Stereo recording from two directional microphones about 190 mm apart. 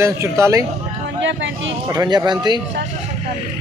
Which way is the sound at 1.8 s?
20° right (ahead or behind).